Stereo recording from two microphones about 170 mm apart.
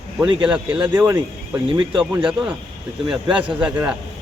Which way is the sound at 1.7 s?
30° right (ahead or behind).